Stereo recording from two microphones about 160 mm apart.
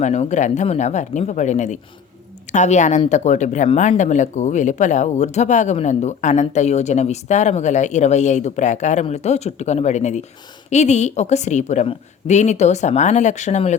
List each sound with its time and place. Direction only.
0.0 s speech: 45° left (ahead or behind)